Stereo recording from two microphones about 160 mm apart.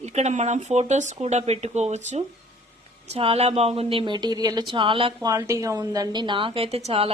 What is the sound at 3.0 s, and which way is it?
A woman's voice, 40° right (ahead or behind).